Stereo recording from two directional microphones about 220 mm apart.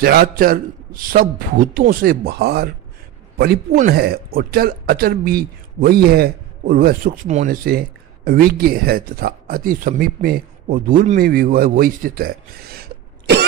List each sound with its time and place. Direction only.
0.0 s a man's voice: 45° right (ahead or behind)